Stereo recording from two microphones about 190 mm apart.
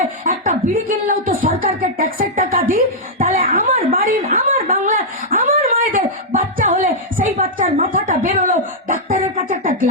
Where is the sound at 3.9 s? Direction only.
45° right (ahead or behind).